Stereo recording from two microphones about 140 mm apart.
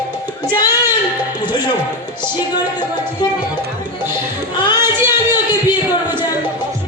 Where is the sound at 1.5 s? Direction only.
30° left (ahead or behind).